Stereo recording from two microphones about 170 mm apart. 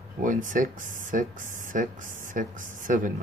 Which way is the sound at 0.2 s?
50° right (ahead or behind).